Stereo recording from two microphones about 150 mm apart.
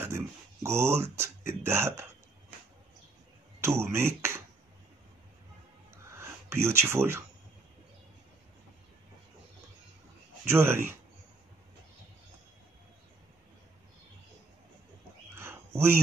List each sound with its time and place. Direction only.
0.0 s speech: 15° right (ahead or behind)
3.6 s speech: 15° right (ahead or behind)
6.1 s speech: 15° right (ahead or behind)
10.5 s speech: 15° right (ahead or behind)
15.3 s a sound: 15° right (ahead or behind)